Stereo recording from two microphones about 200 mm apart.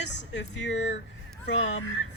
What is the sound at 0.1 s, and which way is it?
Speech, 65° left (ahead or behind).